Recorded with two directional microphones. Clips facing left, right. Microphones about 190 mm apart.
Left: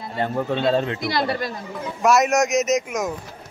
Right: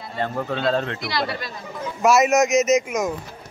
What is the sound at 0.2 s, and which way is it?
Speech, 20° left (ahead or behind).